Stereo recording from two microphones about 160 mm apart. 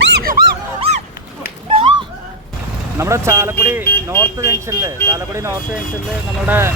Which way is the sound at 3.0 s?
15° right (ahead or behind).